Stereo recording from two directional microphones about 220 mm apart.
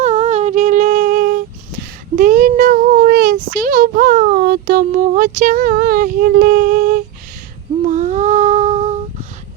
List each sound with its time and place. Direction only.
0.0 s humming: 30° right (ahead or behind)
2.1 s child singing: 40° right (ahead or behind)
7.9 s humming: 35° right (ahead or behind)